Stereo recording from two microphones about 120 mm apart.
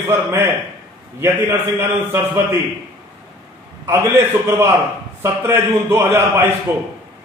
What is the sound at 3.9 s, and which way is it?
A man's voice, 20° right (ahead or behind).